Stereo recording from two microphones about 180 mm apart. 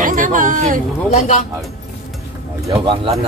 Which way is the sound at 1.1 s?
40° left (ahead or behind).